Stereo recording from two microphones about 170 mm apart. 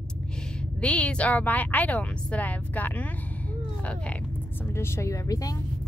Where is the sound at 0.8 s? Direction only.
5° left (ahead or behind).